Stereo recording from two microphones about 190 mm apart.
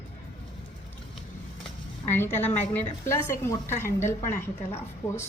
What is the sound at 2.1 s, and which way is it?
A woman's voice, 10° left (ahead or behind).